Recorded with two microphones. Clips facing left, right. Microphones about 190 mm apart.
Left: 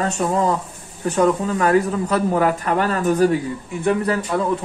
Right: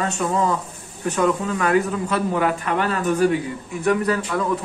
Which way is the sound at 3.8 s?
30° left (ahead or behind).